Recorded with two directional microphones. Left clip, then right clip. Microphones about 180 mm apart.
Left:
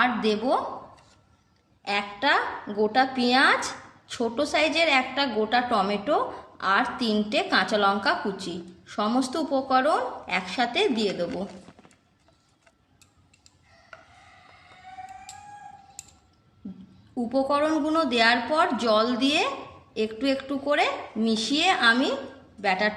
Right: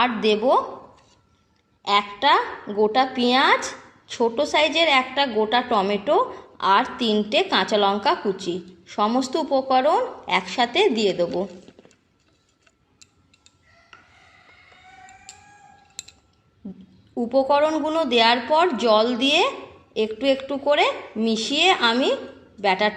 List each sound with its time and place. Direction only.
0.3 s a woman's voice: 15° right (ahead or behind)
1.8 s a woman's voice: 15° right (ahead or behind)
17.2 s a woman's voice: 15° right (ahead or behind)